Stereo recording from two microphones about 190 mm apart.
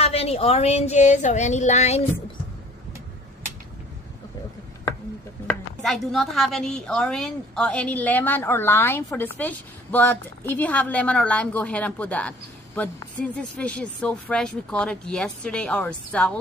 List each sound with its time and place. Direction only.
0.0 s speech: 30° left (ahead or behind)
5.8 s a woman's voice: centre (ahead or behind)